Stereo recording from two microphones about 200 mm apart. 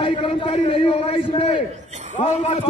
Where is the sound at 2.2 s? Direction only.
35° left (ahead or behind).